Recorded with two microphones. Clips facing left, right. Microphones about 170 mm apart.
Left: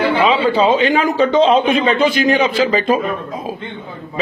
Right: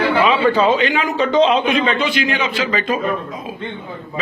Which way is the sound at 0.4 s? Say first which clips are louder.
Left 1 dB; 15° left (ahead or behind).